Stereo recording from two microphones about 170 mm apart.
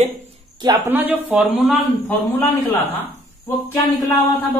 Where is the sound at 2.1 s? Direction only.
10° left (ahead or behind).